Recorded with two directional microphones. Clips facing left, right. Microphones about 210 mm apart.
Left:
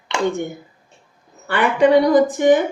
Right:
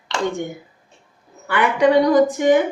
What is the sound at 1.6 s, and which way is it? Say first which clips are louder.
A woman's voice: left 1 dB; 15° right (ahead or behind).